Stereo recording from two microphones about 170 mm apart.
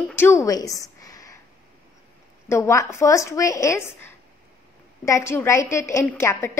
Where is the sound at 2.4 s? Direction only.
15° left (ahead or behind).